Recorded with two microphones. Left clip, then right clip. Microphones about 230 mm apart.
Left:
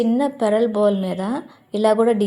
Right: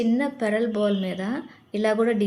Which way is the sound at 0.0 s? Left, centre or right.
Centre.